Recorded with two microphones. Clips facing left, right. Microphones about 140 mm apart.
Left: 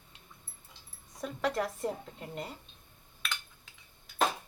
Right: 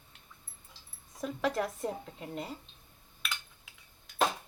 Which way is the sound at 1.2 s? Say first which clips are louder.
Even; centre (ahead or behind).